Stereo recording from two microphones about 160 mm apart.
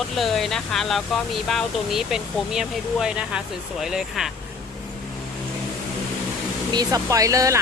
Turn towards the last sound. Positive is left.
turn(degrees=-20)  # may be behind; listen again after turning